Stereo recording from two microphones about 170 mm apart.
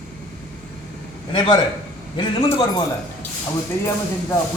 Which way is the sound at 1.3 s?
30° left (ahead or behind).